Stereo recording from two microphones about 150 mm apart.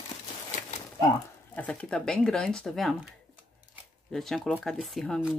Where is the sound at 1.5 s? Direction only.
10° left (ahead or behind).